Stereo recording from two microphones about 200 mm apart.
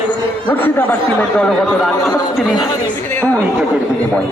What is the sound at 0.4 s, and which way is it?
A man's voice, 10° left (ahead or behind).